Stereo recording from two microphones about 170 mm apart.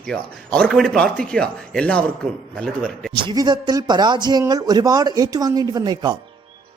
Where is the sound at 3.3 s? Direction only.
25° right (ahead or behind).